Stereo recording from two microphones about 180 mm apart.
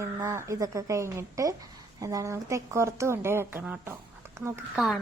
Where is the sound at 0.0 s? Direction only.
15° right (ahead or behind).